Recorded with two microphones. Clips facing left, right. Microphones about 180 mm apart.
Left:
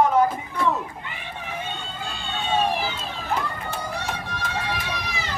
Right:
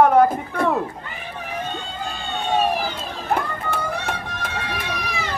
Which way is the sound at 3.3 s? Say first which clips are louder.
Right 4 dB; 55° right (ahead or behind).